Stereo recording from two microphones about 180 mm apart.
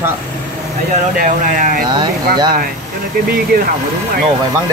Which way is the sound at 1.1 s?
50° right (ahead or behind).